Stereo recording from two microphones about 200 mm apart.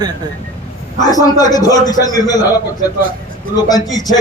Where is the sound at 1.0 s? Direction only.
20° left (ahead or behind).